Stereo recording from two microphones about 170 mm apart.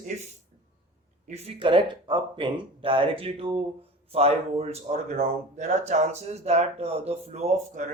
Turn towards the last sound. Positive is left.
turn(degrees=-40)  # may be behind; listen again after turning